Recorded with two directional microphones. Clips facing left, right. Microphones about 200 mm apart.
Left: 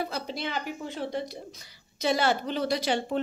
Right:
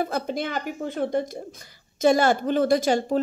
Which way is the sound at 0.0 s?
50° right (ahead or behind).